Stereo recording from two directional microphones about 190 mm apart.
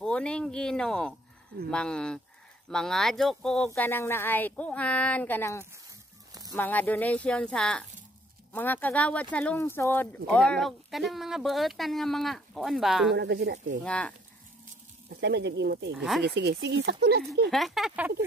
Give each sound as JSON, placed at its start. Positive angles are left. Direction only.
{"t": 0.0, "sound": "speech", "side_deg": 5}
{"t": 13.1, "sound": "speech", "side_deg": -60}
{"t": 13.8, "sound": "speech", "side_deg": 5}
{"t": 15.0, "sound": "speech", "side_deg": -65}
{"t": 17.5, "sound": "speech", "side_deg": 0}